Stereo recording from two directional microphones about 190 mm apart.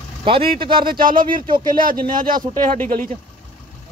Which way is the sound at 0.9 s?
50° right (ahead or behind).